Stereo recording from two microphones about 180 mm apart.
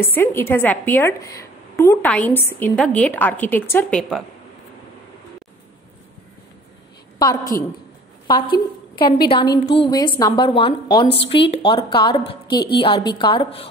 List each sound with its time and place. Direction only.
0.0 s a woman's voice: 15° left (ahead or behind)
7.2 s a woman's voice: 20° left (ahead or behind)